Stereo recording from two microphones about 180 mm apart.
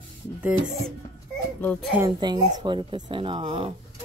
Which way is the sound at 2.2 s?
20° right (ahead or behind).